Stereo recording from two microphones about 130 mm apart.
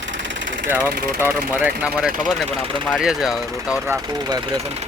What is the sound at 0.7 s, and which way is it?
Speech, 15° right (ahead or behind).